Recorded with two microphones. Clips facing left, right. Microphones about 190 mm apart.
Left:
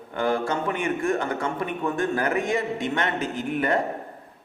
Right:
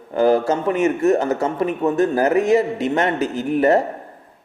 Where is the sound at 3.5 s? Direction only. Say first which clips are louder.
Right 9 dB; 40° right (ahead or behind).